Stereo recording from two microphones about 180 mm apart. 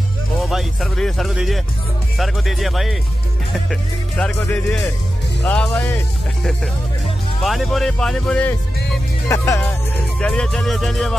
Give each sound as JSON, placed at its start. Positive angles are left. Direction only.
{"t": 0.4, "sound": "speech", "side_deg": 0}
{"t": 7.4, "sound": "speech", "side_deg": 0}
{"t": 10.2, "sound": "speech", "side_deg": 5}